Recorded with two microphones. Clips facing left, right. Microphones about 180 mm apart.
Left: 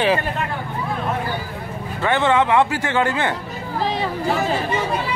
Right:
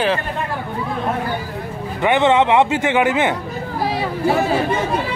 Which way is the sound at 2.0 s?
15° right (ahead or behind).